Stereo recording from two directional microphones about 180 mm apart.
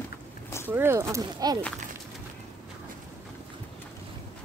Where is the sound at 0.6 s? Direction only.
10° right (ahead or behind).